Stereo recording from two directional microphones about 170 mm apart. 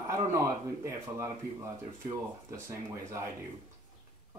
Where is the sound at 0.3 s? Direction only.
20° right (ahead or behind).